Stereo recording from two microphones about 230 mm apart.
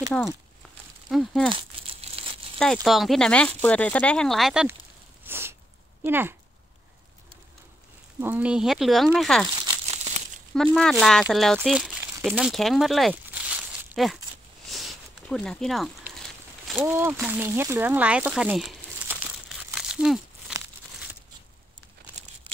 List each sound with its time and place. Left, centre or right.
1.1 s speech: centre
1.5 s crumpling: right
2.6 s speech: centre
5.2 s sneeze: centre
6.0 s speech: centre
8.2 s speech: centre
10.5 s speech: centre
14.7 s a sound: centre